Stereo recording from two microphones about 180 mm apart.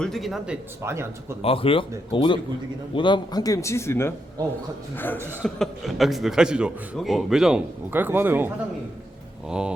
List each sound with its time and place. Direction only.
0.0 s a man's voice: centre (ahead or behind); by 1.4 s 15° right (ahead or behind)
1.4 s a man's voice: 30° left (ahead or behind); by 9.7 s 5° right (ahead or behind)